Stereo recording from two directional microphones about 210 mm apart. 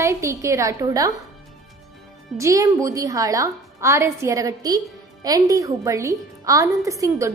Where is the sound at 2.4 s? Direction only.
15° right (ahead or behind).